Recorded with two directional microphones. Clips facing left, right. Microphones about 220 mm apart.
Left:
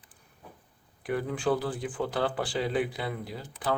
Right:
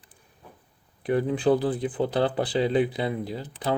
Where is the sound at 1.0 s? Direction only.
25° right (ahead or behind).